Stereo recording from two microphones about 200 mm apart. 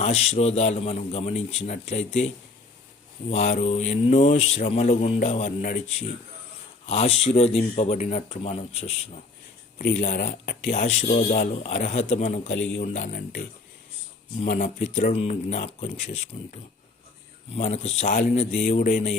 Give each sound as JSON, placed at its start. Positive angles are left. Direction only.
{"t": 0.0, "sound": "speech", "side_deg": 30}
{"t": 10.0, "sound": "speech", "side_deg": 40}